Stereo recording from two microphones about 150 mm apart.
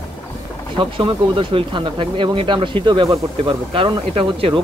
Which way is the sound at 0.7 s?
35° right (ahead or behind).